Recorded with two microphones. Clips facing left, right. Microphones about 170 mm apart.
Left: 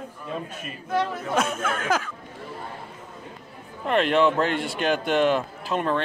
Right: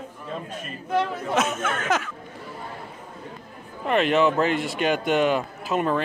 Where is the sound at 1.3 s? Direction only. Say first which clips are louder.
Right 1 dB; 5° right (ahead or behind).